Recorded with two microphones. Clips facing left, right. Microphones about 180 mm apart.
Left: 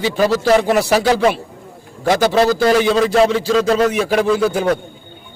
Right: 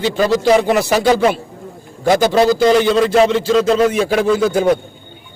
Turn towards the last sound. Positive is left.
turn(degrees=5)  # may be behind; listen again after turning